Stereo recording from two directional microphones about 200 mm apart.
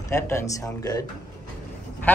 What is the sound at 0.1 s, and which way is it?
A woman's voice, 15° left (ahead or behind).